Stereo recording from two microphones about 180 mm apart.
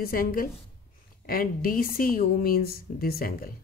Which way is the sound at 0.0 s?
55° left (ahead or behind).